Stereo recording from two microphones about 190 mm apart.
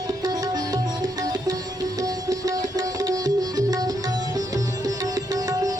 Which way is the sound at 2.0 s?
20° right (ahead or behind).